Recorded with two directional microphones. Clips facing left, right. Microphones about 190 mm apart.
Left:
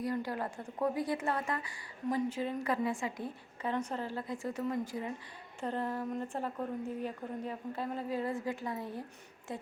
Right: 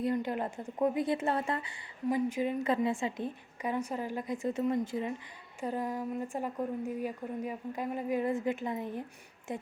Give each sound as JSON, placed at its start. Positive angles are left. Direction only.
{"t": 0.0, "sound": "a woman's voice", "side_deg": -20}
{"t": 2.0, "sound": "a woman's voice", "side_deg": -15}
{"t": 5.5, "sound": "a woman's voice", "side_deg": -10}